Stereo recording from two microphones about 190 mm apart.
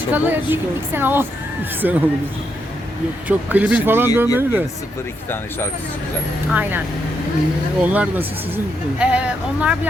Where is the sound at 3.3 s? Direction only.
5° right (ahead or behind).